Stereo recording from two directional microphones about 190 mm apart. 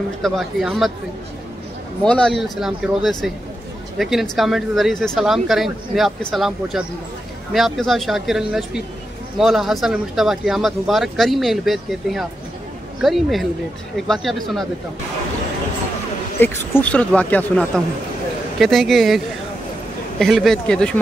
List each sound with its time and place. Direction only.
0.2 s speech: centre (ahead or behind)
2.0 s speech: 5° left (ahead or behind)
16.3 s speech: 10° left (ahead or behind)